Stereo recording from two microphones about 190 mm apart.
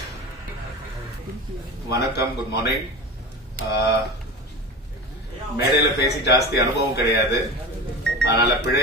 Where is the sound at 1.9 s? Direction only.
60° left (ahead or behind).